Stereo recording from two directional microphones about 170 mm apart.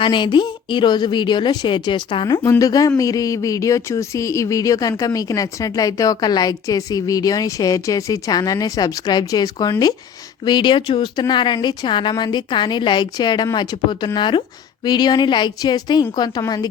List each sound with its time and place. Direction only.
0.0 s speech: 30° left (ahead or behind)